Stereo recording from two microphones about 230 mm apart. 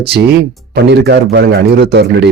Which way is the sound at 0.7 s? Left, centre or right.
Right.